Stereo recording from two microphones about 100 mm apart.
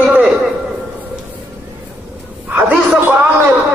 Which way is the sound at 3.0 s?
20° right (ahead or behind).